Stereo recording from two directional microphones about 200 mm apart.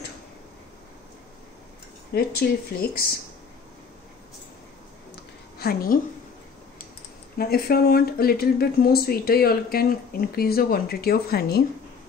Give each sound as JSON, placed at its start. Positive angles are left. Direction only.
{"t": 2.1, "sound": "speech", "side_deg": 50}
{"t": 5.6, "sound": "speech", "side_deg": 50}
{"t": 7.3, "sound": "speech", "side_deg": 50}